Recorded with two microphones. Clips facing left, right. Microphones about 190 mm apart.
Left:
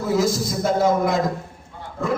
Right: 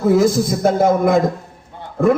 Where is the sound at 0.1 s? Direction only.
55° right (ahead or behind).